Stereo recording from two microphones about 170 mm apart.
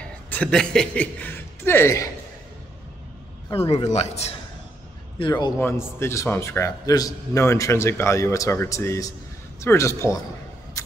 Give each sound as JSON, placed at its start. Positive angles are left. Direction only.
{"t": 0.0, "sound": "a man's voice", "side_deg": 10}
{"t": 3.5, "sound": "speech", "side_deg": 35}
{"t": 5.2, "sound": "a man's voice", "side_deg": 25}
{"t": 5.6, "sound": "a man's voice", "side_deg": 15}